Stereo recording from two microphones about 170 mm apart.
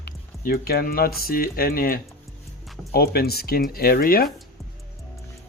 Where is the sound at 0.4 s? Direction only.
65° left (ahead or behind).